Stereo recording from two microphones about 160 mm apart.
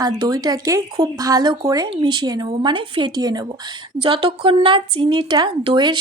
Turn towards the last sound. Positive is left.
turn(degrees=-30)  # may be behind; listen again after turning